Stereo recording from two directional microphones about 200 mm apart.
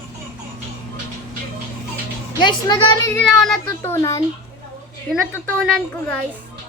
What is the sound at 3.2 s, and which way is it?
Speech, centre (ahead or behind).